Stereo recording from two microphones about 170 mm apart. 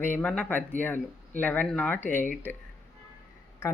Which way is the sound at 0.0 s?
10° left (ahead or behind).